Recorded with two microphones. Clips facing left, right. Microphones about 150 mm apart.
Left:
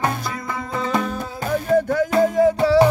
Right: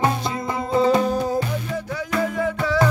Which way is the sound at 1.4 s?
50° left (ahead or behind).